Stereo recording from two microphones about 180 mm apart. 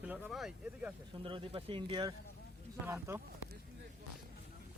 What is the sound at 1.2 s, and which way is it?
Speech, 30° right (ahead or behind).